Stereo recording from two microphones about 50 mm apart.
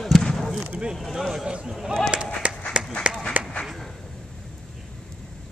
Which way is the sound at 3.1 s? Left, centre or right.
Right.